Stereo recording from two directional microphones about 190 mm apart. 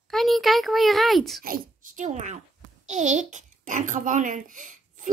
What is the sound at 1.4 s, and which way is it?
A child's voice, 45° right (ahead or behind).